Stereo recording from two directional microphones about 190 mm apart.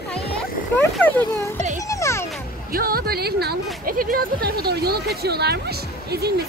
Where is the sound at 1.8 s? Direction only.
15° left (ahead or behind).